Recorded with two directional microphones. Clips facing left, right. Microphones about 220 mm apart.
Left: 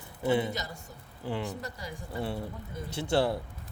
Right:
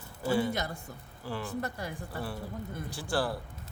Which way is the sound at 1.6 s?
55° right (ahead or behind).